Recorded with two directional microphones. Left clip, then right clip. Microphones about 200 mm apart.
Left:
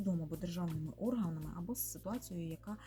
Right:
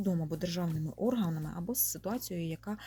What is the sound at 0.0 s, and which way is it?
Speech, 50° right (ahead or behind).